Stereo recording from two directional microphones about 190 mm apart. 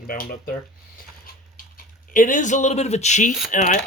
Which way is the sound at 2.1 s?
45° left (ahead or behind).